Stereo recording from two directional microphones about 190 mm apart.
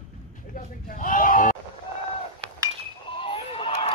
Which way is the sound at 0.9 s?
45° left (ahead or behind).